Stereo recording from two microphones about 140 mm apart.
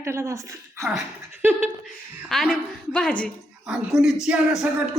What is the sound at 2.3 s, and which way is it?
A woman's voice, 5° left (ahead or behind).